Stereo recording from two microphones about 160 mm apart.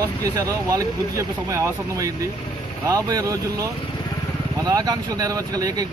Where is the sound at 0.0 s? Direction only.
20° right (ahead or behind).